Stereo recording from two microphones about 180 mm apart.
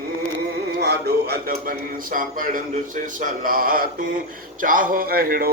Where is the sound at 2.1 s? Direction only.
50° right (ahead or behind).